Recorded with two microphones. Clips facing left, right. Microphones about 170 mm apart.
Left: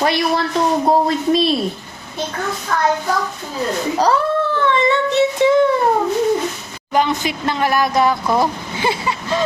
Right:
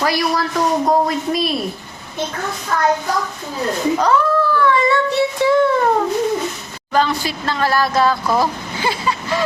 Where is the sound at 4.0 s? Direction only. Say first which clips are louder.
Left 2 dB; 30° left (ahead or behind).